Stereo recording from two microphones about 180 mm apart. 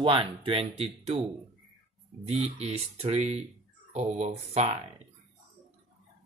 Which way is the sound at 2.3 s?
35° right (ahead or behind).